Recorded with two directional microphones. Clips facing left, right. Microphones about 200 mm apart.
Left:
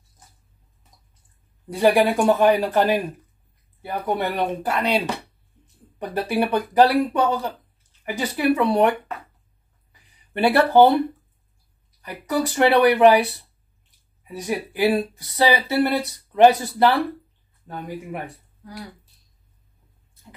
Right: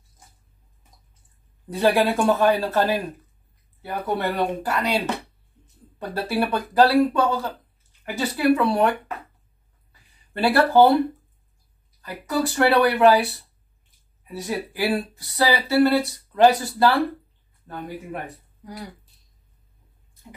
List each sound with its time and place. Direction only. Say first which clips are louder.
1.7 s speech: left 2 dB; 15° left (ahead or behind)
9.9 s a sound: left 3 dB; 20° left (ahead or behind)
12.0 s speech: left 1 dB; 20° left (ahead or behind)